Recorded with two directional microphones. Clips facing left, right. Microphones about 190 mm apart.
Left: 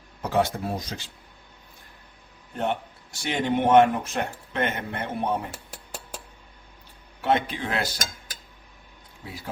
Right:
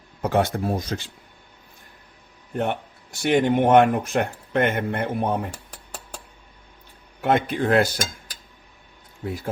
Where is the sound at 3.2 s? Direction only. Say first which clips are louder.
Right 6 dB; 55° right (ahead or behind).